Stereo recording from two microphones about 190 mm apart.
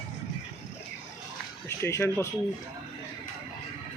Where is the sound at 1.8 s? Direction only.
15° left (ahead or behind).